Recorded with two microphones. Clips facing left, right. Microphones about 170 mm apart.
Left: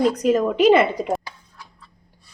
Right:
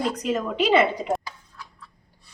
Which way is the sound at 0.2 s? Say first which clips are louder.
Left 7 dB; 45° left (ahead or behind).